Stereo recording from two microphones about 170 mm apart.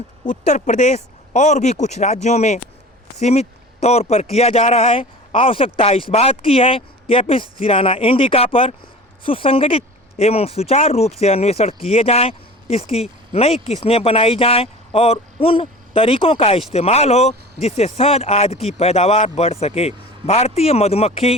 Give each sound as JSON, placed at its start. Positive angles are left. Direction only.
{"t": 0.3, "sound": "speech", "side_deg": 45}